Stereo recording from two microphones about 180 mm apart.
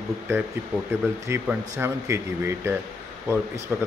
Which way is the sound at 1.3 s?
15° right (ahead or behind).